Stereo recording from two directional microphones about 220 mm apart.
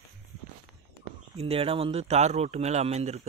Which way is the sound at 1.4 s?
25° right (ahead or behind).